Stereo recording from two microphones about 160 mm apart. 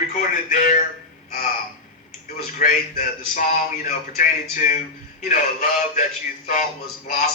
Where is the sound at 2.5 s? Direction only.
50° left (ahead or behind).